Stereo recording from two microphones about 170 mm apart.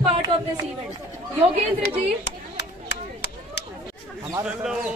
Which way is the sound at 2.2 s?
85° left.